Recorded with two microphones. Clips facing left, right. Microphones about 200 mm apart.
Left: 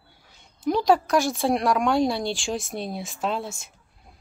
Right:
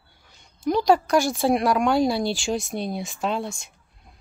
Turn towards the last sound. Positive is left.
turn(degrees=5)  # may be behind; listen again after turning